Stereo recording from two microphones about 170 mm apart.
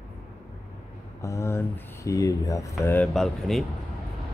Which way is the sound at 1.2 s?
15° left (ahead or behind).